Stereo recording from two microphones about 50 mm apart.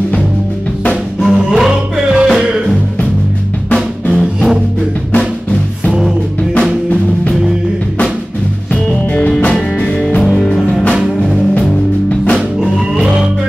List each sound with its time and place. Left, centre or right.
1.2 s music: centre
5.1 s drum: left
9.4 s music: left
12.4 s music: centre